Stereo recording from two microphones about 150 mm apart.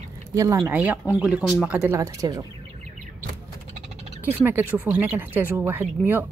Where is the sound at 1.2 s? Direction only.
5° right (ahead or behind).